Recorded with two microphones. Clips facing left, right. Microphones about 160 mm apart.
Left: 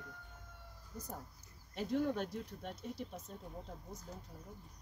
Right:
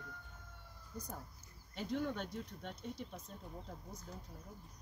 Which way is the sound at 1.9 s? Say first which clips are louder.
Left 4 dB; 5° left (ahead or behind).